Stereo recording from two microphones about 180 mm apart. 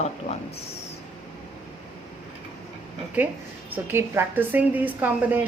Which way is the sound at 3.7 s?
15° right (ahead or behind).